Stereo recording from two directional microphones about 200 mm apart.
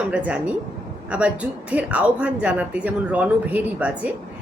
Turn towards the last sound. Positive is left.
turn(degrees=-5)  # may be behind; listen again after turning